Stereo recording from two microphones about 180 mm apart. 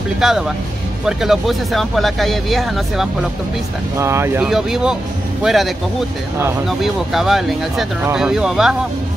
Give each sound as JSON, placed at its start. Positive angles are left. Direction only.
{"t": 0.2, "sound": "speech", "side_deg": -5}
{"t": 4.0, "sound": "speech", "side_deg": -15}
{"t": 4.5, "sound": "speech", "side_deg": 0}
{"t": 6.7, "sound": "speech", "side_deg": 0}